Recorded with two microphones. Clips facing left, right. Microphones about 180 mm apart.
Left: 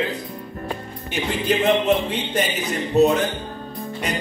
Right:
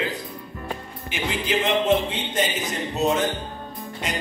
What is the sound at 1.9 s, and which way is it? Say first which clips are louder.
Speech: left 1 dB; 65° left (ahead or behind).